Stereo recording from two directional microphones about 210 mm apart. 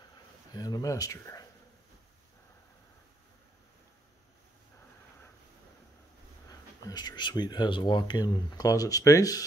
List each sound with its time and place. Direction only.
0.5 s speech: 20° left (ahead or behind)
6.9 s speech: 20° left (ahead or behind)